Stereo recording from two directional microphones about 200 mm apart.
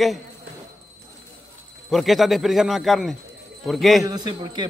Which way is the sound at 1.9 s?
Centre (ahead or behind).